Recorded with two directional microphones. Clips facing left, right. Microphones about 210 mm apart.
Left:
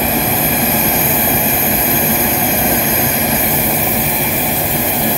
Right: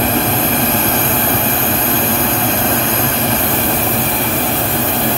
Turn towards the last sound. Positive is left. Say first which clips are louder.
# even
turn(degrees=10)  # may be behind; listen again after turning